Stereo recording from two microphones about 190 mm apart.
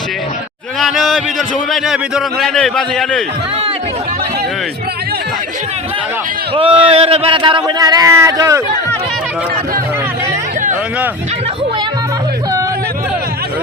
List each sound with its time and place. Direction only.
0.8 s a man's voice: centre (ahead or behind)
6.5 s speech: 30° right (ahead or behind)